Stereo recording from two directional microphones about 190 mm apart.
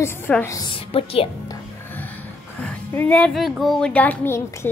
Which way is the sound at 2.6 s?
10° left (ahead or behind).